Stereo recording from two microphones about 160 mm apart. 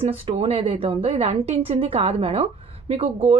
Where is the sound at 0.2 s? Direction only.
40° right (ahead or behind).